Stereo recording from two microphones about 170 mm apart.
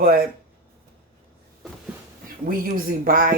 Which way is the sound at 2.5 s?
55° right (ahead or behind).